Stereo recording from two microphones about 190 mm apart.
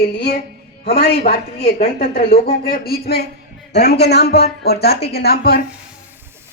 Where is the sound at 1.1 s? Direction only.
55° left (ahead or behind).